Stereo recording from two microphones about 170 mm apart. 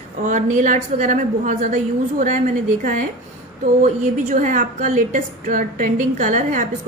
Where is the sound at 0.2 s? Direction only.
45° right (ahead or behind).